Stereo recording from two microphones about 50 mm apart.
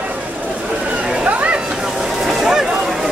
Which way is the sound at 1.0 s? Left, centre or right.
Right.